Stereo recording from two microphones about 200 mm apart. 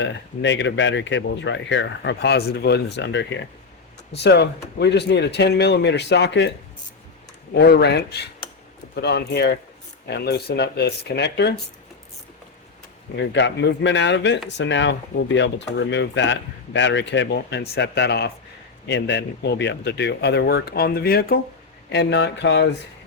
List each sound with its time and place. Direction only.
0.0 s speech: 65° left (ahead or behind)
7.5 s speech: 55° left (ahead or behind)
13.1 s speech: 65° left (ahead or behind)
21.8 s speech: 60° left (ahead or behind)